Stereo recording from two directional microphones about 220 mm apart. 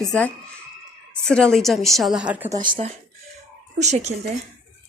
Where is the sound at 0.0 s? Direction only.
5° left (ahead or behind).